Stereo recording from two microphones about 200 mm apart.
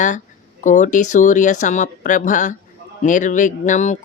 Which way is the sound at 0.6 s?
40° left (ahead or behind).